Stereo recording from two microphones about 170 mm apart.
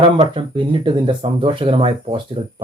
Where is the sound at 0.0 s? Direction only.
30° right (ahead or behind).